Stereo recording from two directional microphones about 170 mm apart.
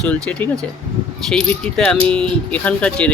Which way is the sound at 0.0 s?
10° left (ahead or behind).